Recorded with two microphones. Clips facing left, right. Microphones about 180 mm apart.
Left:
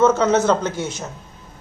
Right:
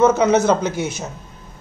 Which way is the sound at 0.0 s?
15° right (ahead or behind).